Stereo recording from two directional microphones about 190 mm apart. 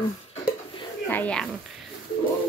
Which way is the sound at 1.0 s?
10° left (ahead or behind).